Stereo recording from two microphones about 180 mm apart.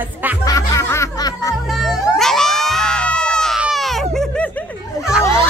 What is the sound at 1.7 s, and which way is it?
Cat, centre (ahead or behind).